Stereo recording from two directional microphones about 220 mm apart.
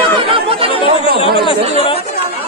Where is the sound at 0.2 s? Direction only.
25° right (ahead or behind).